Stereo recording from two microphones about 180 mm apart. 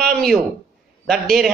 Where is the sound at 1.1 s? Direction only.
Centre (ahead or behind).